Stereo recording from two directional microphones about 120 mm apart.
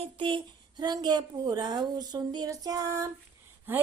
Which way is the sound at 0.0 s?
45° right (ahead or behind).